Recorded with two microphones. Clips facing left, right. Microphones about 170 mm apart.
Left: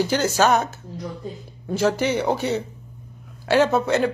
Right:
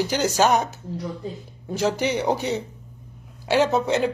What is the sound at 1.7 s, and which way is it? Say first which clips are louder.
Speech: left 2 dB; 15° right (ahead or behind).